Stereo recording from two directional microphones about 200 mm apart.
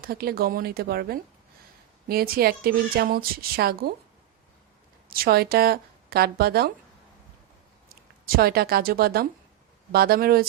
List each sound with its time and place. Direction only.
0.0 s a woman's voice: 50° right (ahead or behind)
5.0 s speech: 50° right (ahead or behind)
7.9 s a woman's voice: 50° right (ahead or behind)